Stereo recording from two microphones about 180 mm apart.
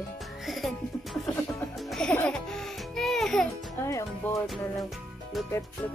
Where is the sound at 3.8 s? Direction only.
15° left (ahead or behind).